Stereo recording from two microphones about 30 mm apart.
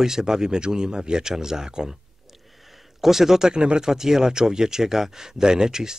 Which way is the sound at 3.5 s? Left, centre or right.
Right.